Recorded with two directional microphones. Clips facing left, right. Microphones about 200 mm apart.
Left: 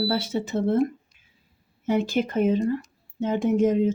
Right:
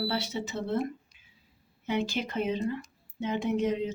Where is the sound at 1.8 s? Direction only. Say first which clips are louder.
Left 7 dB; 50° left (ahead or behind).